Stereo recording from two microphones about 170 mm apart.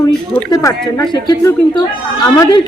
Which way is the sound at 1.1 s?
25° left (ahead or behind).